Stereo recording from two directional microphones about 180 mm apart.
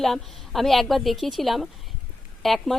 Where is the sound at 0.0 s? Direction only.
Centre (ahead or behind).